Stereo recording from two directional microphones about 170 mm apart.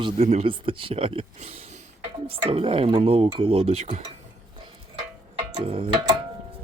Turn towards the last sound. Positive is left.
turn(degrees=-30)  # may be behind; listen again after turning